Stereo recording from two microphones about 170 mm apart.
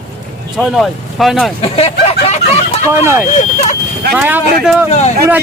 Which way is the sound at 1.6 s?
35° left (ahead or behind).